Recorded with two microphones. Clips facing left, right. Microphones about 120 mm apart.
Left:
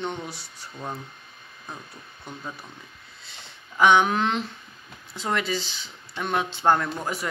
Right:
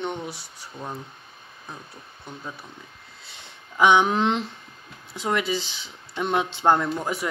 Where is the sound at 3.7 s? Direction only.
15° right (ahead or behind).